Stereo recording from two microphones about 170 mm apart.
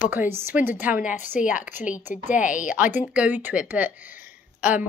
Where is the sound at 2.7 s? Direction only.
10° right (ahead or behind).